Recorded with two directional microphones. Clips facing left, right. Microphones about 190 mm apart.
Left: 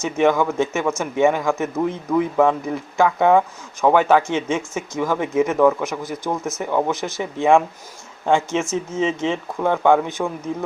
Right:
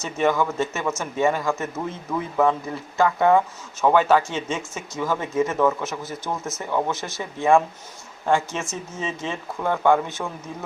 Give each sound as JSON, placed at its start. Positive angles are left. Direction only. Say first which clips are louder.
{"t": 0.0, "sound": "speech", "louder": "left 4 dB", "side_deg": 15}